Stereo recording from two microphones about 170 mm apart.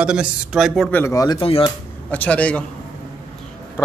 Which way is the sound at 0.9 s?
15° left (ahead or behind).